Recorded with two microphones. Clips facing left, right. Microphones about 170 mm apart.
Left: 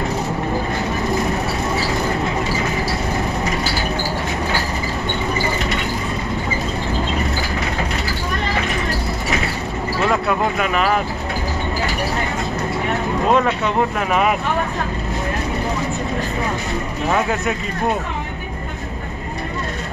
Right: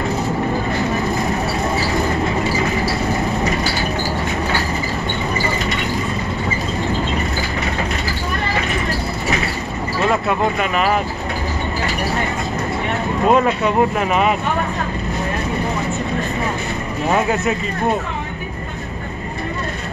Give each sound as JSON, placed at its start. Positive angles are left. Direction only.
{"t": 10.2, "sound": "speech", "side_deg": 0}
{"t": 13.3, "sound": "speech", "side_deg": -5}